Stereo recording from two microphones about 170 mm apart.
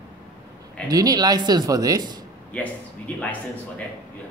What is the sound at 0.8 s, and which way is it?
Speech, 20° right (ahead or behind).